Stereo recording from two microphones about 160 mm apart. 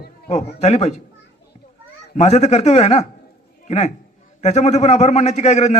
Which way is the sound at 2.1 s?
45° left (ahead or behind).